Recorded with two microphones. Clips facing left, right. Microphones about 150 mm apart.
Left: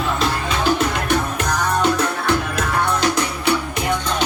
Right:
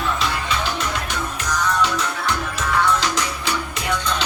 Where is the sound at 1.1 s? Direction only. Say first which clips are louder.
Left 6 dB; 55° left (ahead or behind).